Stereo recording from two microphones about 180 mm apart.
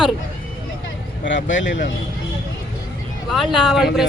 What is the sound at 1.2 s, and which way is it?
Speech, 90° left.